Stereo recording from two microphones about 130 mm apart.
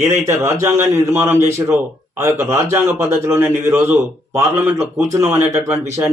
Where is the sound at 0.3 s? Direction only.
20° right (ahead or behind).